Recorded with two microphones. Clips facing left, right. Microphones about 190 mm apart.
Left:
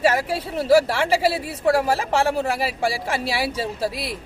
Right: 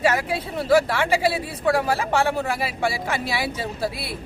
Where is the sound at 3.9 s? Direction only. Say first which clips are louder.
Left 3 dB; 90° left.